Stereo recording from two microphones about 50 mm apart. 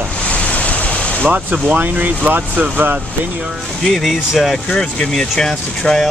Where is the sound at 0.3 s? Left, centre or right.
Left.